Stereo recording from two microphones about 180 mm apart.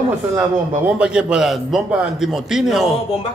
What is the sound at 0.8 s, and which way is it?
A man's voice, 5° right (ahead or behind).